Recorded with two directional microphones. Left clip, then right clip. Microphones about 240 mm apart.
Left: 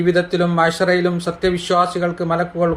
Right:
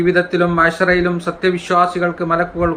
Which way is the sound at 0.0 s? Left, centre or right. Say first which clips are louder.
Right 2 dB; left.